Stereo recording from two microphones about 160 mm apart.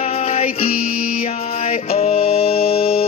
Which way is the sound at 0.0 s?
40° left (ahead or behind).